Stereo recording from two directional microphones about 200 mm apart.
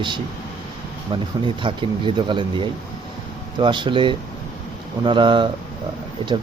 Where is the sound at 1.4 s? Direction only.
25° right (ahead or behind).